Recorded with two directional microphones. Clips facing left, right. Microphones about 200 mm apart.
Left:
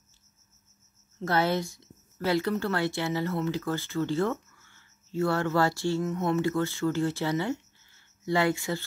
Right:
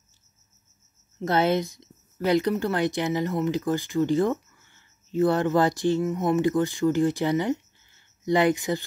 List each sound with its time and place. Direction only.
1.2 s a woman's voice: 20° right (ahead or behind)